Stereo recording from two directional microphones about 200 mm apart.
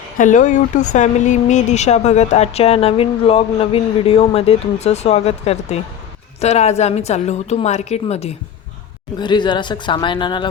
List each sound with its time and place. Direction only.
0.2 s speech: 40° left (ahead or behind); by 10.4 s 25° left (ahead or behind)